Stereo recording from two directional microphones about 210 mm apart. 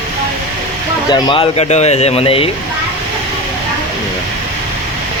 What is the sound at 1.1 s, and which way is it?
Speech, 25° left (ahead or behind).